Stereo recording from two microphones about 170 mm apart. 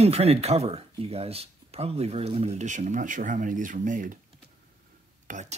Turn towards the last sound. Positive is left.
turn(degrees=-50)  # may be behind; listen again after turning